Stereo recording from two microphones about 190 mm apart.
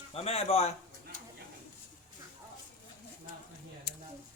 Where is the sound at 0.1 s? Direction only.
30° left (ahead or behind).